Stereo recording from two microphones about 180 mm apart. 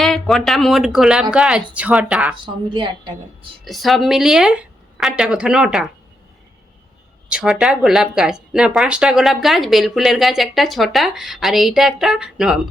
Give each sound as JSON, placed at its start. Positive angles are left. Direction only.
{"t": 0.0, "sound": "speech", "side_deg": 0}
{"t": 2.3, "sound": "a woman's voice", "side_deg": -25}
{"t": 3.6, "sound": "speech", "side_deg": 0}
{"t": 7.3, "sound": "speech", "side_deg": -5}